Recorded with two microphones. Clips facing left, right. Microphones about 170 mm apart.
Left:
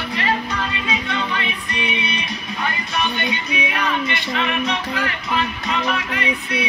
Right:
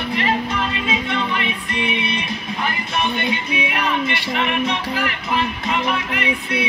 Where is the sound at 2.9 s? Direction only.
25° right (ahead or behind).